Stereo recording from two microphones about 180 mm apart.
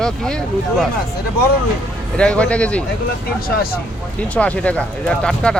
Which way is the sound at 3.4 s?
55° left (ahead or behind).